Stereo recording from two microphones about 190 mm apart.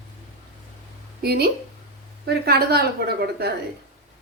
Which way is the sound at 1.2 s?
55° right (ahead or behind).